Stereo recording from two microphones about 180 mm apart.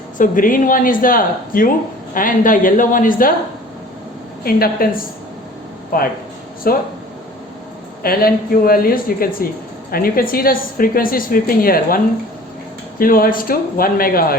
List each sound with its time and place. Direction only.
0.2 s a woman's voice: 50° left (ahead or behind)
4.4 s a woman's voice: 55° left (ahead or behind)
5.9 s a woman's voice: 50° left (ahead or behind)
8.0 s a woman's voice: 55° left (ahead or behind)
13.0 s a woman's voice: 55° left (ahead or behind)